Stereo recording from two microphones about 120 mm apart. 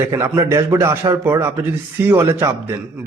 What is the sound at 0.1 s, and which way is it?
A man's voice, 25° right (ahead or behind).